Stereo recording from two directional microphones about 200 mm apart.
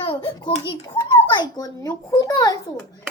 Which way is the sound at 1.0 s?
20° left (ahead or behind).